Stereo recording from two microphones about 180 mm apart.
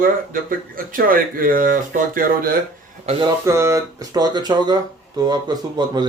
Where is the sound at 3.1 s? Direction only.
25° right (ahead or behind).